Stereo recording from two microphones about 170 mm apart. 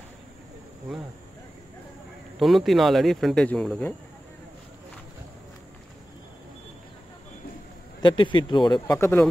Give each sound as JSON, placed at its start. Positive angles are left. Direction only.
{"t": 2.3, "sound": "speech", "side_deg": 0}
{"t": 8.0, "sound": "speech", "side_deg": 30}